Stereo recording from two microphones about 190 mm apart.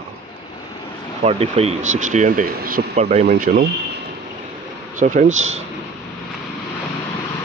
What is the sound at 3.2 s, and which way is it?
Speech, 55° right (ahead or behind).